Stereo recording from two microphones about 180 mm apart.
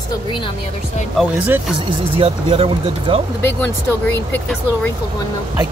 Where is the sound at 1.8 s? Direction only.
30° right (ahead or behind).